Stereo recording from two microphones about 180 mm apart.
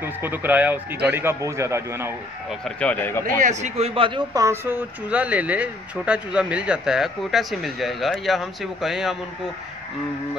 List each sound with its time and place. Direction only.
0.0 s speech: 10° right (ahead or behind)
2.6 s speech: 5° left (ahead or behind)
3.3 s speech: 40° right (ahead or behind); by 9.1 s centre (ahead or behind)